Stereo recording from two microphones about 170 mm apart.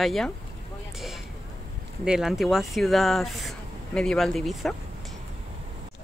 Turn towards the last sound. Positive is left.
turn(degrees=0)  # may be behind; listen again after turning